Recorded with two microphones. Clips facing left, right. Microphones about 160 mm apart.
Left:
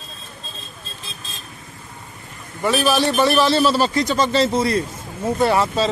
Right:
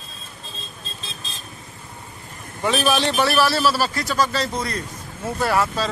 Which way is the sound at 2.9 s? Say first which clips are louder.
Left 4 dB; 10° left (ahead or behind).